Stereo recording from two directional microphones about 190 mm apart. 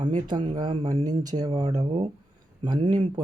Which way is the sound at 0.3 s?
25° right (ahead or behind).